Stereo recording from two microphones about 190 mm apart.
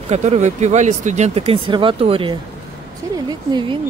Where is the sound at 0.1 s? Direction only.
35° right (ahead or behind).